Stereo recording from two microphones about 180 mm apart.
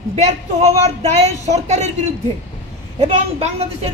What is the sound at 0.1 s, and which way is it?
A woman's voice, 35° right (ahead or behind).